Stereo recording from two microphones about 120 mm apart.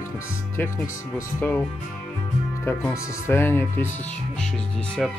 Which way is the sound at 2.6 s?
20° left (ahead or behind).